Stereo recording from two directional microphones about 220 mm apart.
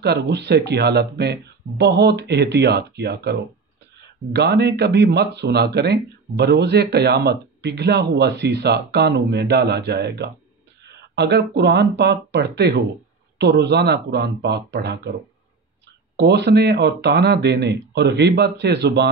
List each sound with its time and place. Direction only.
0.0 s speech: 50° right (ahead or behind)
16.2 s speech: 50° right (ahead or behind)